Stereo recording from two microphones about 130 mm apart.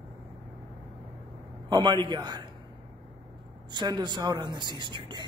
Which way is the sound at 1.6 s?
35° right (ahead or behind).